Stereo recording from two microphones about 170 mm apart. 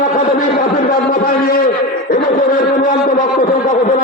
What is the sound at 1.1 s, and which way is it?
A man's voice, 60° left (ahead or behind).